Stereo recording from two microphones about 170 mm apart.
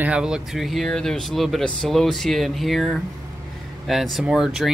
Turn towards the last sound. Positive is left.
turn(degrees=-5)  # may be behind; listen again after turning